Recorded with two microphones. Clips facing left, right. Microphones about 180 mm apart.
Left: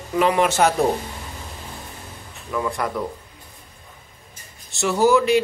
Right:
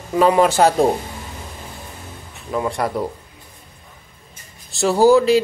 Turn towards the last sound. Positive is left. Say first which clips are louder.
# right 4 dB
turn(degrees=-35)  # may be behind; listen again after turning